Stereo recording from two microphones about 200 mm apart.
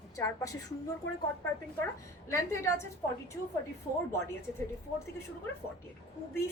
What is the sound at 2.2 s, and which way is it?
Speech, 15° left (ahead or behind).